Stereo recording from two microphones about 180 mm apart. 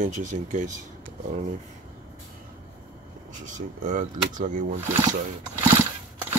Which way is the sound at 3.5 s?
45° right (ahead or behind).